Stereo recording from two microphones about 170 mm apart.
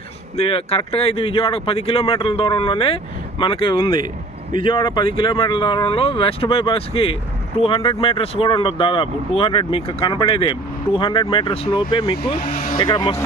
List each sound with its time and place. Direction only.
0.4 s speech: 35° left (ahead or behind)
4.0 s vehicle: 55° right (ahead or behind)
4.6 s speech: 30° left (ahead or behind)